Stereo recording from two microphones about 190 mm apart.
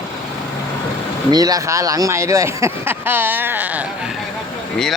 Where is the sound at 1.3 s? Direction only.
20° right (ahead or behind).